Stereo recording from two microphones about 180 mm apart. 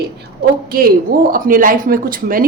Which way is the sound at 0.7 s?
55° right (ahead or behind).